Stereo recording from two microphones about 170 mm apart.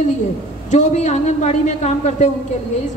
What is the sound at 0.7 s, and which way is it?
A woman's voice, 45° left (ahead or behind).